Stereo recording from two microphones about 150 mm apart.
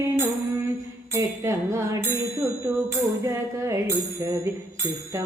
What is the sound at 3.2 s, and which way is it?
Music, 20° right (ahead or behind).